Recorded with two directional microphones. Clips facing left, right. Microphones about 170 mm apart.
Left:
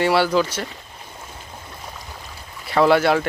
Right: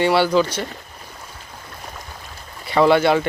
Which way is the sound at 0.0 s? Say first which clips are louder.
Right 1 dB; centre (ahead or behind).